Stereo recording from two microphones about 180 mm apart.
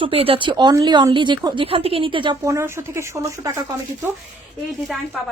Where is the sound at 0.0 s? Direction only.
30° right (ahead or behind).